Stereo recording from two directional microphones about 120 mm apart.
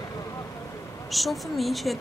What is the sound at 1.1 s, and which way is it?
Speech, centre (ahead or behind).